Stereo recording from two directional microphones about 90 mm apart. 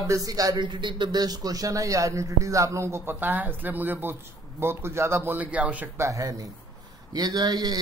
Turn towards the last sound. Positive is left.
turn(degrees=-50)  # may be behind; listen again after turning